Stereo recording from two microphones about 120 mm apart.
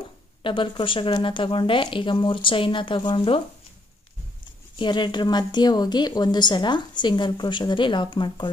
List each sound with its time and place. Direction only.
0.4 s speech: 45° left (ahead or behind)
4.7 s speech: 40° left (ahead or behind)